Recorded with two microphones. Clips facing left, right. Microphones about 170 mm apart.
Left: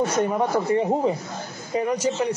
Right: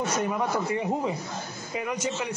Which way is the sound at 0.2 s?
30° left (ahead or behind).